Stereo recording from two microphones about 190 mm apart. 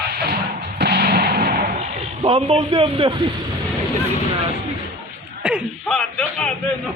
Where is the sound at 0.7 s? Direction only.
60° right (ahead or behind).